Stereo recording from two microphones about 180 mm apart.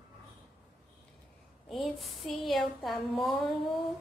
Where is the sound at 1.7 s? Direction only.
Centre (ahead or behind).